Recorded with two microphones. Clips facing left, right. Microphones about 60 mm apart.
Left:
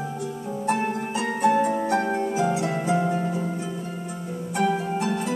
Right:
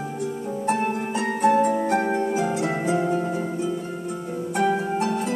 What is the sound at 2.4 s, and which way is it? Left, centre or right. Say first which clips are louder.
Music: even; right.